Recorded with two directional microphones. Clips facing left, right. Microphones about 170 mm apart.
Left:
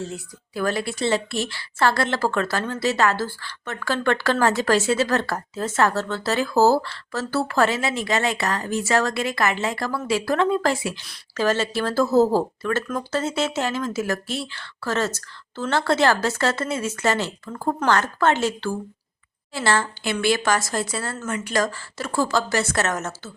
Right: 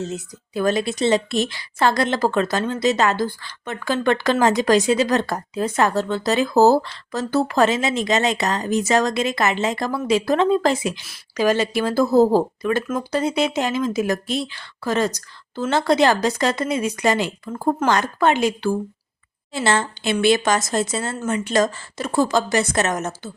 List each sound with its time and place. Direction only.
0.0 s a woman's voice: 20° right (ahead or behind)